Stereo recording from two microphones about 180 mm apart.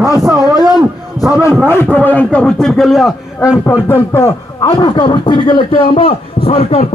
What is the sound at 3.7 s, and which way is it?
A man's voice, 15° left (ahead or behind).